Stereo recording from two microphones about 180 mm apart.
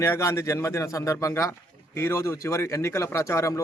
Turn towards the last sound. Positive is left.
turn(degrees=15)  # may be behind; listen again after turning